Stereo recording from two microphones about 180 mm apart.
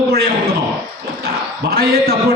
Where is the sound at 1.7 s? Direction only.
60° right (ahead or behind).